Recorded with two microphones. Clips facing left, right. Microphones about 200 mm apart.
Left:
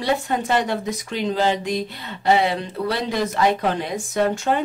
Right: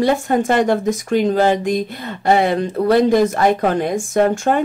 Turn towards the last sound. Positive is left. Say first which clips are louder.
# right 5 dB
turn(degrees=-50)  # may be behind; listen again after turning